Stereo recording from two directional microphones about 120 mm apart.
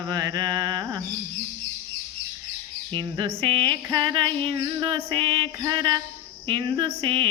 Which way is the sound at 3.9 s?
40° right (ahead or behind).